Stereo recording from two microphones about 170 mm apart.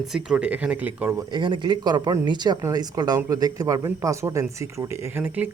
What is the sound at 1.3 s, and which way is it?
Speech, 30° right (ahead or behind).